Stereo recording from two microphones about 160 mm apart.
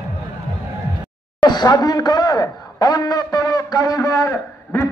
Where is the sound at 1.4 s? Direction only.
25° left (ahead or behind).